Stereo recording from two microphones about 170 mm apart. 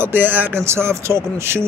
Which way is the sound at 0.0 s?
10° right (ahead or behind).